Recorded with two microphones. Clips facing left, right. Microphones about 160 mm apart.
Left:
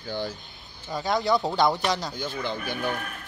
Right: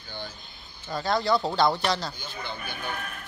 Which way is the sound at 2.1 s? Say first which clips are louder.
Left 7 dB; 90° left.